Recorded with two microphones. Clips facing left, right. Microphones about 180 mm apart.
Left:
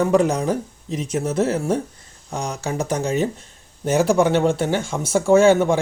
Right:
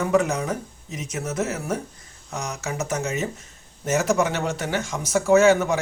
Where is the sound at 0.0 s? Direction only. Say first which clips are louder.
Left 4 dB; 35° left (ahead or behind).